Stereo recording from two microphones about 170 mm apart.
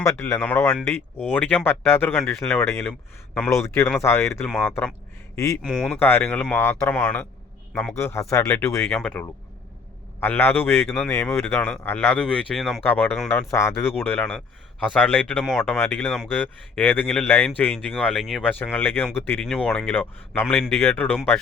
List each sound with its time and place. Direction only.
0.0 s speech: 15° left (ahead or behind)
4.4 s speech: 5° left (ahead or behind)
12.8 s speech: 10° left (ahead or behind)
13.5 s speech: 15° left (ahead or behind)